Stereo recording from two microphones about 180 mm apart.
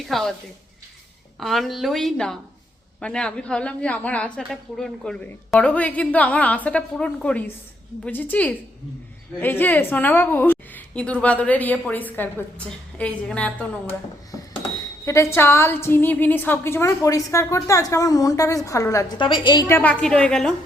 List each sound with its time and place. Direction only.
0.0 s a woman's voice: centre (ahead or behind)
1.4 s a woman's voice: centre (ahead or behind)
14.3 s dishes: 20° left (ahead or behind)
15.0 s a woman's voice: 15° left (ahead or behind)
19.6 s a woman's voice: 10° left (ahead or behind)